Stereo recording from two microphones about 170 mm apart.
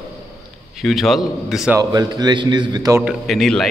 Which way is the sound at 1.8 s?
25° right (ahead or behind).